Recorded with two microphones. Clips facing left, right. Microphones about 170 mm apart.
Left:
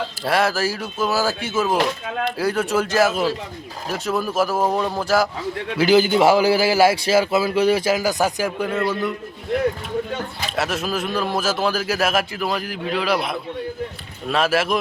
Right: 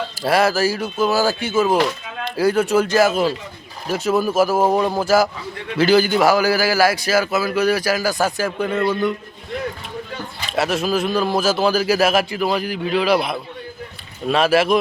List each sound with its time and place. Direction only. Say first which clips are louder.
0.2 s speech: right 4 dB; centre (ahead or behind)
5.7 s a man's voice: right 1 dB; 15° left (ahead or behind)
8.6 s speech: right 4 dB; 5° left (ahead or behind)
10.5 s speech: right 5 dB; centre (ahead or behind)